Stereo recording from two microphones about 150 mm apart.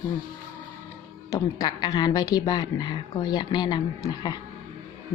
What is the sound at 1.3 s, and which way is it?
A woman's voice, 25° left (ahead or behind).